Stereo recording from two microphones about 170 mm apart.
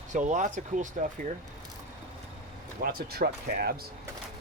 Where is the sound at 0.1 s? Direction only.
45° right (ahead or behind).